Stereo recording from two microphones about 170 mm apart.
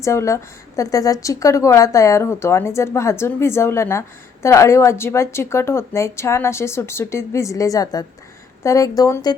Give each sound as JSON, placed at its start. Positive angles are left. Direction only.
{"t": 0.0, "sound": "a woman's voice", "side_deg": 15}